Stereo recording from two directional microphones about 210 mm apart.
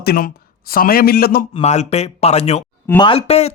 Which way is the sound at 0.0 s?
45° left (ahead or behind).